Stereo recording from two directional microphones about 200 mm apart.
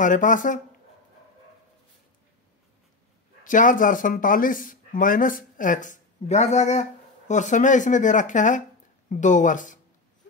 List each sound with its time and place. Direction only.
0.0 s speech: 40° left (ahead or behind)
3.4 s speech: 40° left (ahead or behind)